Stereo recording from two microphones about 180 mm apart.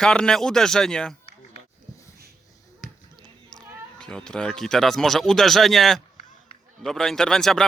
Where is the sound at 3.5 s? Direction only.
5° left (ahead or behind).